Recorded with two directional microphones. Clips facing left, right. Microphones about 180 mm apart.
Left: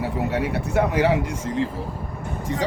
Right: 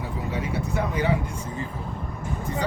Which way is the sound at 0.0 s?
70° left (ahead or behind).